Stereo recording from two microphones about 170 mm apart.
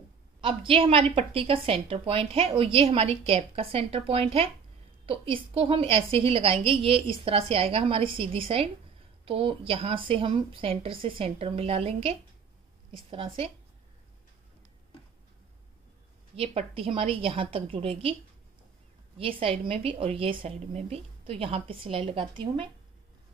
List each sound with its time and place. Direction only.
0.4 s a woman's voice: 30° right (ahead or behind)
16.3 s a woman's voice: 35° right (ahead or behind)
19.1 s a woman's voice: 30° right (ahead or behind)